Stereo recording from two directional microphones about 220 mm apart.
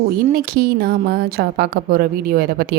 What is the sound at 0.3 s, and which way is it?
A woman's voice, 45° right (ahead or behind).